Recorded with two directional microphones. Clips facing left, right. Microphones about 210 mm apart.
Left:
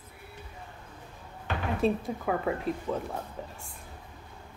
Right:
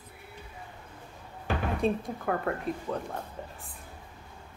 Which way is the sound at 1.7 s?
Centre (ahead or behind).